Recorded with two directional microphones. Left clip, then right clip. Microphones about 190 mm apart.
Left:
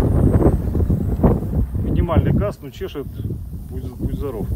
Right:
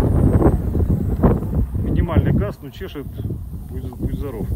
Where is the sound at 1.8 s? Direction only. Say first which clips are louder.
Left 2 dB; 50° left (ahead or behind).